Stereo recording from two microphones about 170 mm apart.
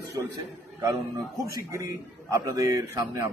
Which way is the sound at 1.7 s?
20° right (ahead or behind).